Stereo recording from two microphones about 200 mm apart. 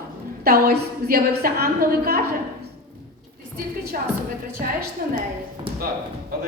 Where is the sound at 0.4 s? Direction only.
50° right (ahead or behind).